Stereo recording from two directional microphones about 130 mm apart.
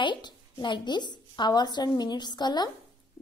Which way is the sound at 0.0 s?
35° left (ahead or behind).